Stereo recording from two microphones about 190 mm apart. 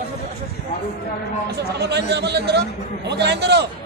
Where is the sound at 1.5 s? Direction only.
60° right (ahead or behind).